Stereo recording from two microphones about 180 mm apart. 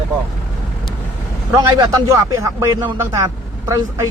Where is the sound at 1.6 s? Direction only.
20° right (ahead or behind).